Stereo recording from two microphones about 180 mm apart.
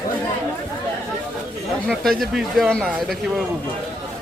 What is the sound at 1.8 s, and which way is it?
Speech, centre (ahead or behind).